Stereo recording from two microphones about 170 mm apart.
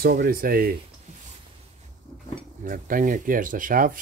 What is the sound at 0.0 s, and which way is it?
Stir, 60° right (ahead or behind).